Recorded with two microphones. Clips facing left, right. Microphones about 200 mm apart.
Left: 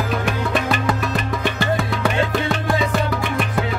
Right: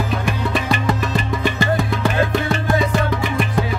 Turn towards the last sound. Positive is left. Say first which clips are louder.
# right 2 dB
turn(degrees=0)  # may be behind; listen again after turning